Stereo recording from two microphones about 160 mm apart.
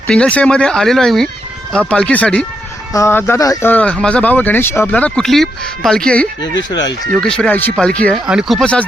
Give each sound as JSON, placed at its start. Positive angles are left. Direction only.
{"t": 0.1, "sound": "speech", "side_deg": 10}
{"t": 6.7, "sound": "speech", "side_deg": 25}
{"t": 7.1, "sound": "speech", "side_deg": 5}